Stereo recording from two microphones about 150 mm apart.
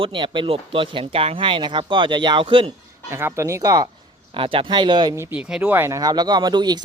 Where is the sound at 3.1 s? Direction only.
15° right (ahead or behind).